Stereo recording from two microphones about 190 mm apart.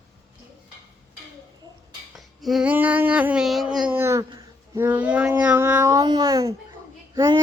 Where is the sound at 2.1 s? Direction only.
Centre (ahead or behind); by 6.5 s 20° right (ahead or behind).